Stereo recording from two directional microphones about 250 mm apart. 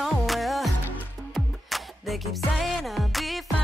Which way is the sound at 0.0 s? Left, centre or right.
Centre.